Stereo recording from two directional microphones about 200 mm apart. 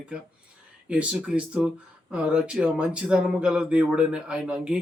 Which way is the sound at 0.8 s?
5° right (ahead or behind).